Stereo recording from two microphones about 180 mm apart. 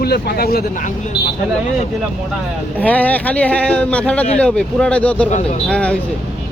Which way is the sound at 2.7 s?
10° left (ahead or behind).